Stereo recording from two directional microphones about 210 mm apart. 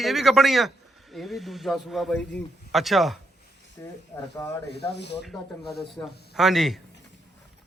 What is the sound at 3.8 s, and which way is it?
Speech, 15° left (ahead or behind).